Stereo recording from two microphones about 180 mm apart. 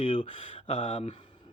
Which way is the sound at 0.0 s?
30° left (ahead or behind).